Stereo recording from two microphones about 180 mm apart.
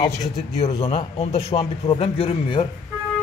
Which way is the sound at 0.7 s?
30° left (ahead or behind).